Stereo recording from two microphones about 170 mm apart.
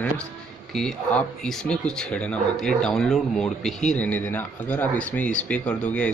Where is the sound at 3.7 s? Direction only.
45° left (ahead or behind).